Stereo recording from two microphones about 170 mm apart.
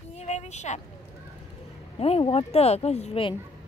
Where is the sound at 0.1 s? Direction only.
40° left (ahead or behind).